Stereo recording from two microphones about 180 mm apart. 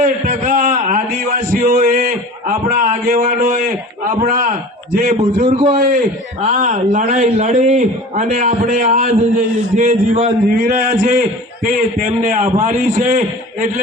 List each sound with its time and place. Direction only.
0.0 s a sound: 45° right (ahead or behind)
4.0 s a man's voice: 45° right (ahead or behind)
5.5 s a man's voice: 30° right (ahead or behind)
6.5 s a man's voice: 45° right (ahead or behind)